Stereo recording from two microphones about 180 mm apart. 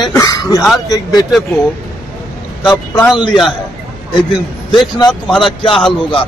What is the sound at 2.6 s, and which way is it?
Speech, 25° left (ahead or behind).